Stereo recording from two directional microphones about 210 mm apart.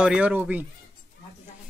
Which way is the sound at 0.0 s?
5° right (ahead or behind).